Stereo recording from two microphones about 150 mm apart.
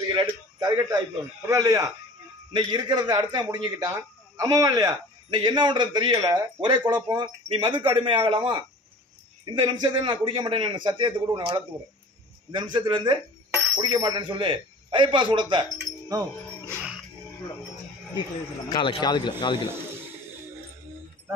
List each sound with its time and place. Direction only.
0.1 s a sound: 25° right (ahead or behind)
1.5 s a man's voice: 20° right (ahead or behind)
16.1 s jingle bell: 25° right (ahead or behind)
18.7 s speech: 30° left (ahead or behind)